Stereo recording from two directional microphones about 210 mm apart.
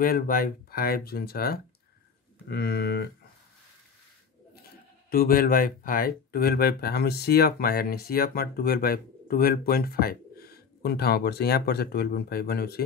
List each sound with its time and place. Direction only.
0.0 s speech: 45° left (ahead or behind)
5.1 s speech: 45° left (ahead or behind)